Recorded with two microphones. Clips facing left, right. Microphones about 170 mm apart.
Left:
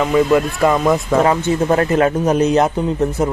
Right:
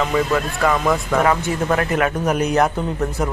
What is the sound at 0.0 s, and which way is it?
Speech, 15° left (ahead or behind).